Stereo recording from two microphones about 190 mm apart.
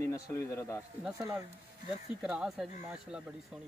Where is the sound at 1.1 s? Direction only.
15° right (ahead or behind).